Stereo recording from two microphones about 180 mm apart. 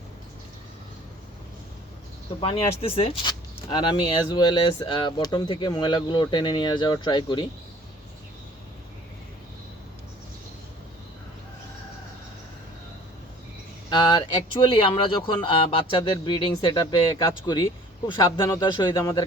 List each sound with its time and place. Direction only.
2.4 s speech: 30° left (ahead or behind)
13.9 s speech: 25° left (ahead or behind)